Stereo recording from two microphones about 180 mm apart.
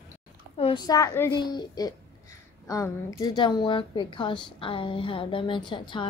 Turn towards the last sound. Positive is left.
turn(degrees=25)  # may be behind; listen again after turning